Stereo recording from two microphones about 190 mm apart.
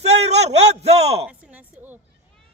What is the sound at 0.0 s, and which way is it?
A man's voice, 35° right (ahead or behind).